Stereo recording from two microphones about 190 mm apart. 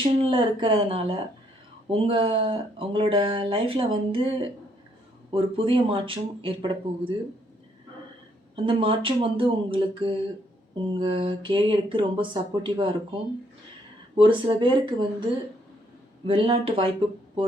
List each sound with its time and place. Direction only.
0.0 s speech: 25° right (ahead or behind)
8.5 s speech: 30° right (ahead or behind)
14.2 s speech: 25° right (ahead or behind)